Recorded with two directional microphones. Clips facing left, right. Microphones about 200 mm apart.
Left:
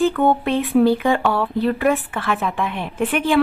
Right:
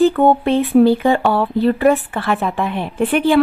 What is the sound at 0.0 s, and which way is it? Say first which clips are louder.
A woman's voice: right 4 dB; 35° right (ahead or behind).